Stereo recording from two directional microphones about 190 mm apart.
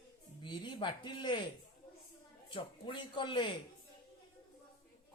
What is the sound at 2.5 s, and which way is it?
A man's voice, 25° left (ahead or behind).